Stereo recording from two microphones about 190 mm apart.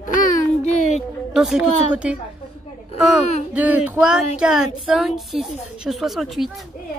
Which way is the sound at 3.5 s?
10° right (ahead or behind).